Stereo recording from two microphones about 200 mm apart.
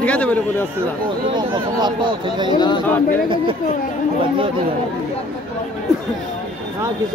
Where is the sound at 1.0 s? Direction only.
25° right (ahead or behind).